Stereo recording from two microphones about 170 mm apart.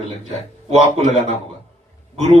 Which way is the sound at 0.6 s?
40° right (ahead or behind).